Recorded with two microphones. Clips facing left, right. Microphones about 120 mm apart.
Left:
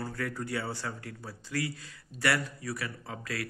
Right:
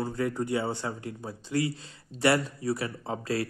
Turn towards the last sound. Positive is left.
turn(degrees=-30)  # may be behind; listen again after turning